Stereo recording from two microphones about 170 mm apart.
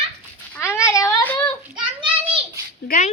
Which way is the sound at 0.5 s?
15° left (ahead or behind).